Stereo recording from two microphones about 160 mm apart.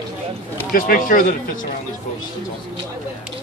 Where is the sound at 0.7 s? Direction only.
60° left (ahead or behind).